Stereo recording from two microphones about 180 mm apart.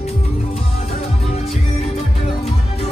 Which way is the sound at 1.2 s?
35° left (ahead or behind).